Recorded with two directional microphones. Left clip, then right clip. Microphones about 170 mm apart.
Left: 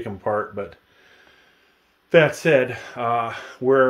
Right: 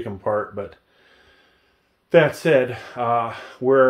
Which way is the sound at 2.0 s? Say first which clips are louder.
Even; 15° left (ahead or behind).